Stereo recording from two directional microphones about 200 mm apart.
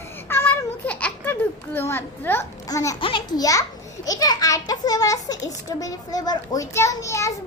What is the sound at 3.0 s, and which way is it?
A child's voice, 20° left (ahead or behind).